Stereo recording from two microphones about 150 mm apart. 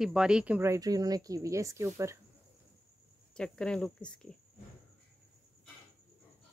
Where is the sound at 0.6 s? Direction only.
20° right (ahead or behind).